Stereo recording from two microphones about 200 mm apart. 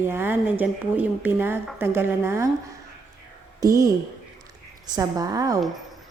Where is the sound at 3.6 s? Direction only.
15° right (ahead or behind).